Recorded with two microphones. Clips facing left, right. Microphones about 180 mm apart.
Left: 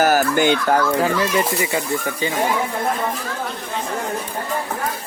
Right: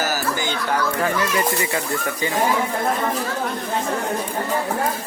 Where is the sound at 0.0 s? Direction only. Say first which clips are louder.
Left 8 dB; 55° left (ahead or behind).